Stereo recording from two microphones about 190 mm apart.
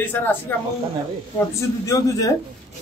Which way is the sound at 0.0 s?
10° left (ahead or behind).